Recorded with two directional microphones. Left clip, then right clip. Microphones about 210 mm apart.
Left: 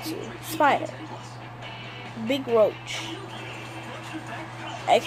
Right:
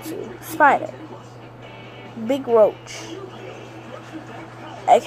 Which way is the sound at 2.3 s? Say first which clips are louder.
Right 5 dB; 10° right (ahead or behind).